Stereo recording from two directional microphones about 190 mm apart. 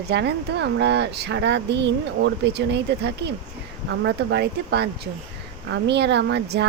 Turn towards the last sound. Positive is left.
turn(degrees=-60)  # may be behind; listen again after turning